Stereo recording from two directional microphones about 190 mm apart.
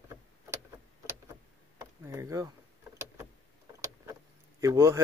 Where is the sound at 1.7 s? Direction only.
15° right (ahead or behind).